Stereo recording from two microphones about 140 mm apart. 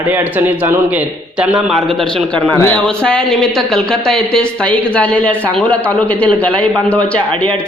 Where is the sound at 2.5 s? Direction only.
15° left (ahead or behind).